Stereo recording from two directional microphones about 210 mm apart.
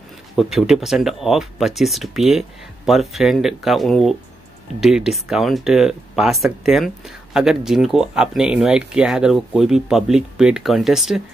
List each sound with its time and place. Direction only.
0.4 s speech: centre (ahead or behind)